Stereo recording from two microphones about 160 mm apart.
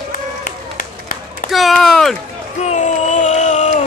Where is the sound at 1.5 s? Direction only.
Centre (ahead or behind).